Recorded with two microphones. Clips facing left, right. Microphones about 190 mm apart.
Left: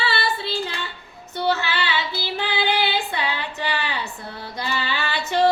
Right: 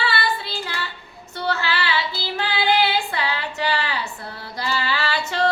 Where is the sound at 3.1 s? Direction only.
20° left (ahead or behind).